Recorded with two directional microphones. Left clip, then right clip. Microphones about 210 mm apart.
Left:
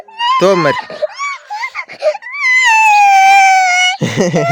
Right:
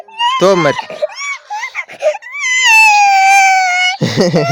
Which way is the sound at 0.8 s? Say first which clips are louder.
Even; 15° left (ahead or behind).